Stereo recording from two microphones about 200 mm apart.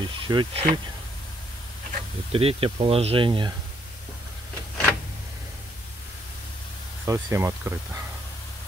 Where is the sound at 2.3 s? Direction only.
30° right (ahead or behind).